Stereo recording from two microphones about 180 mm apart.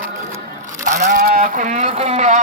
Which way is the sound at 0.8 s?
45° right (ahead or behind).